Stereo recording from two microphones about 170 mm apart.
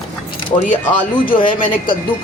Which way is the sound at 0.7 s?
50° left (ahead or behind).